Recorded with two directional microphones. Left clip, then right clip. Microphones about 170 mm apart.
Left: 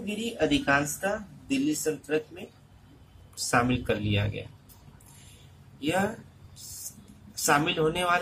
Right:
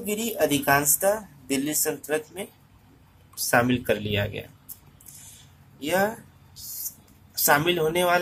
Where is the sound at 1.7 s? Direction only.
45° right (ahead or behind).